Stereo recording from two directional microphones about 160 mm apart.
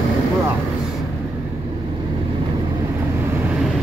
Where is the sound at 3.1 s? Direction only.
15° right (ahead or behind).